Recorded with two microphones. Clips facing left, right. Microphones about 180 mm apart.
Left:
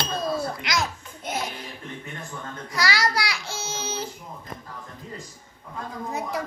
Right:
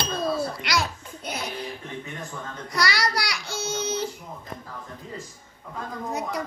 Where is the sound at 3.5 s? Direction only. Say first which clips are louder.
Right 4 dB; 60° right (ahead or behind).